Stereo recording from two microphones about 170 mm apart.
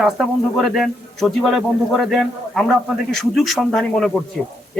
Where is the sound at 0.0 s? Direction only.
Centre (ahead or behind).